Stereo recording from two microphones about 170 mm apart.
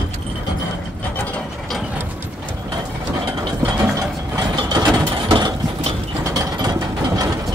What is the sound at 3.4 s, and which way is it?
Ratchet, 20° right (ahead or behind).